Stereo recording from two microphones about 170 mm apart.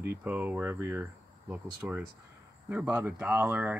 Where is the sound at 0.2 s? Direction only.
10° right (ahead or behind).